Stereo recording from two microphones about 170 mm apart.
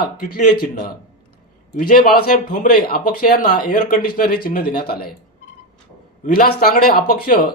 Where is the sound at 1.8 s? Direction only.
60° left (ahead or behind).